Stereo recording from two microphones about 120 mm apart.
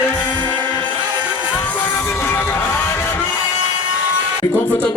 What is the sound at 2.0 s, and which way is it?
Music, 20° left (ahead or behind).